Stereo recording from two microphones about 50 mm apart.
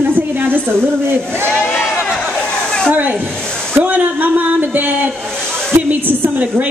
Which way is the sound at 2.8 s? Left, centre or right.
Right.